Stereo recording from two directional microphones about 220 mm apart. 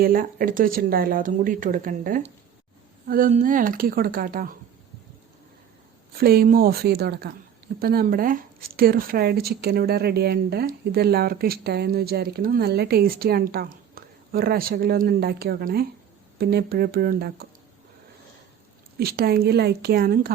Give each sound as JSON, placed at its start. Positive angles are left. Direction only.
{"t": 0.0, "sound": "speech", "side_deg": -40}
{"t": 6.1, "sound": "speech", "side_deg": -45}
{"t": 18.9, "sound": "speech", "side_deg": -45}